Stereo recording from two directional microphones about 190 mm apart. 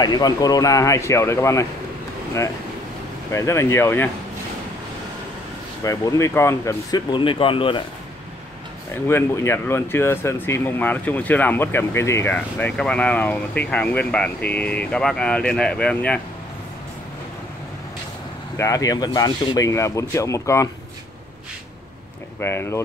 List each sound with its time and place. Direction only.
0.0 s speech: 20° left (ahead or behind)
3.3 s speech: 15° left (ahead or behind)
5.9 s speech: 15° left (ahead or behind)
8.9 s speech: 10° left (ahead or behind)
18.6 s speech: 15° left (ahead or behind)
22.4 s speech: 10° left (ahead or behind)